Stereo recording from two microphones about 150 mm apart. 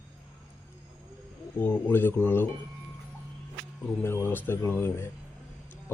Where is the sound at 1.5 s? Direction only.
10° left (ahead or behind).